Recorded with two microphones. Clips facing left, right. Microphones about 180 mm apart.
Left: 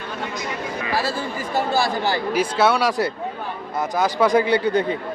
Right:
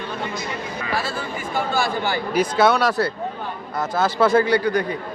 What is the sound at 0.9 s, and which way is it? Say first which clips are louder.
Speech: left 2 dB; 35° left (ahead or behind).